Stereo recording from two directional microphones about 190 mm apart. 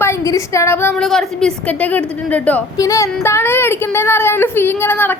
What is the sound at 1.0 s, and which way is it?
A woman's voice, 5° left (ahead or behind).